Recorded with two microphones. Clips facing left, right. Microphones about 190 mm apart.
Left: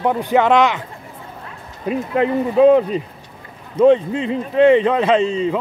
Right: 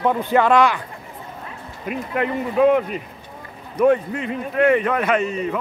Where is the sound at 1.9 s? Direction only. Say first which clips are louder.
Left 5 dB; 30° left (ahead or behind).